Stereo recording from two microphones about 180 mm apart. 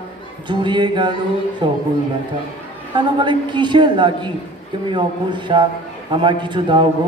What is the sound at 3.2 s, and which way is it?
A woman's voice, 25° right (ahead or behind).